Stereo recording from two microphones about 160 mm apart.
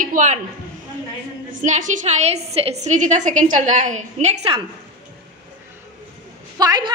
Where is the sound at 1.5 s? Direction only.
50° right (ahead or behind).